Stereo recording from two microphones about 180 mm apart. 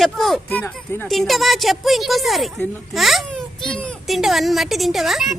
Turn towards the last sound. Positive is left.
turn(degrees=0)  # may be behind; listen again after turning